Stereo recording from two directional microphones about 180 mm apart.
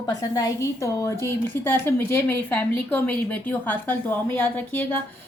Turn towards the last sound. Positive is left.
turn(degrees=10)  # may be behind; listen again after turning